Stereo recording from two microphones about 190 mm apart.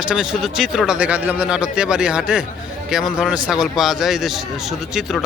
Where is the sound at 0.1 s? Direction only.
5° right (ahead or behind).